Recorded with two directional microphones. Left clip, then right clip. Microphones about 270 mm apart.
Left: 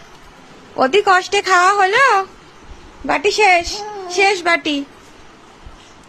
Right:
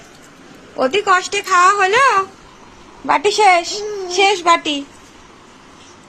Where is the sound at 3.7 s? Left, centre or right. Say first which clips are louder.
Right 2 dB; centre.